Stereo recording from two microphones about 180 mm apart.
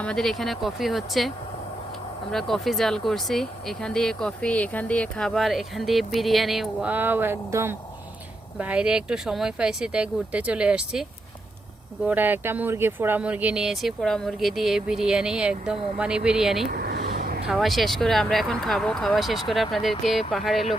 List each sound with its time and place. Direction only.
0.0 s speech: 5° left (ahead or behind)
2.3 s speech: centre (ahead or behind)
12.0 s speech: 10° right (ahead or behind)
16.6 s a sound: 60° right (ahead or behind)
17.5 s speech: centre (ahead or behind)